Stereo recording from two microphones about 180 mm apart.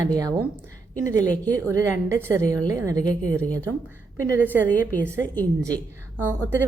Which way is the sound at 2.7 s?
15° right (ahead or behind).